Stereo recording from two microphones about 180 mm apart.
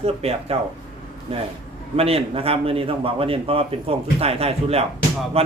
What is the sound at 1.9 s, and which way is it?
Speech, 35° right (ahead or behind).